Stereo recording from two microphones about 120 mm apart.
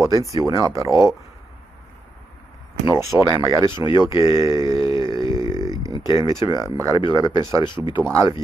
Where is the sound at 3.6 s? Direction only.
40° left (ahead or behind).